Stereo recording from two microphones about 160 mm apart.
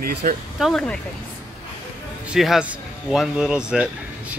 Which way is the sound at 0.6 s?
5° left (ahead or behind).